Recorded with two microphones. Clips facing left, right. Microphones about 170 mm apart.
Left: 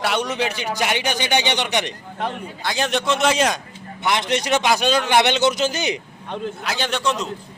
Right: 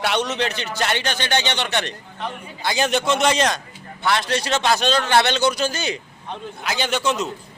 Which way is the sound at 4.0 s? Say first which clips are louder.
Even; 20° left (ahead or behind).